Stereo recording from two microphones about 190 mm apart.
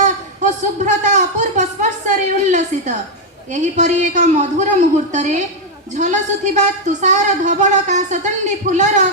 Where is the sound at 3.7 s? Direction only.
40° right (ahead or behind).